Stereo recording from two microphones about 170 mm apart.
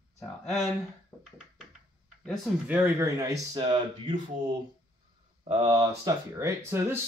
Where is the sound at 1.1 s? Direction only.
10° left (ahead or behind).